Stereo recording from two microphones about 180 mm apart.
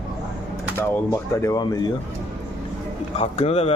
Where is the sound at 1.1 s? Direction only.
20° left (ahead or behind).